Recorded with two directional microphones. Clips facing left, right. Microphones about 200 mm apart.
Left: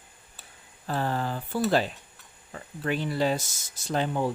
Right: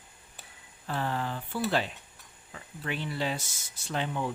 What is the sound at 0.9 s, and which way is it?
Speech, 40° left (ahead or behind).